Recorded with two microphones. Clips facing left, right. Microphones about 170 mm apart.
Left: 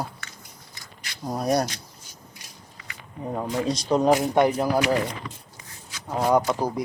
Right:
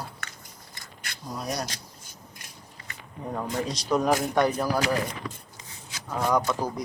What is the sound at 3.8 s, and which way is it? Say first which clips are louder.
Speech: left 4 dB; 25° left (ahead or behind).